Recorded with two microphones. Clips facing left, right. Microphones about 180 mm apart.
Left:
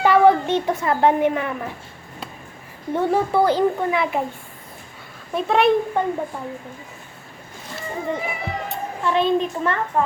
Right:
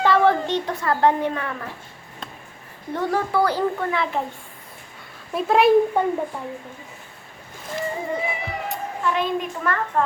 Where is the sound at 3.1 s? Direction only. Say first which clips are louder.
Left 3 dB; 20° left (ahead or behind).